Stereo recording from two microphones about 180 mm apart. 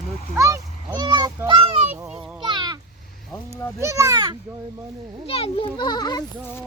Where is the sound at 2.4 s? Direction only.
25° right (ahead or behind).